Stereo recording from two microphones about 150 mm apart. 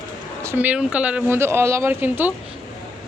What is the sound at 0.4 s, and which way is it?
Speech, 10° right (ahead or behind).